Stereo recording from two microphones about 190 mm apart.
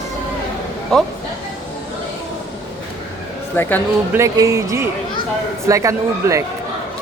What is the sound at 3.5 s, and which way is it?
Speech, 10° left (ahead or behind).